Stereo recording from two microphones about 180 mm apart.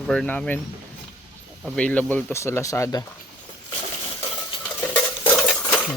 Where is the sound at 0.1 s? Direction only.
5° left (ahead or behind).